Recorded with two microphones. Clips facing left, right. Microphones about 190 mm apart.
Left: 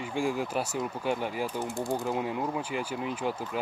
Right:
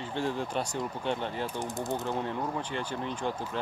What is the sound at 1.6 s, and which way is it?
Speech, 20° right (ahead or behind).